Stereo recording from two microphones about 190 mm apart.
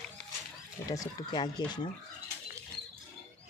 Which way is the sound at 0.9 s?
20° left (ahead or behind).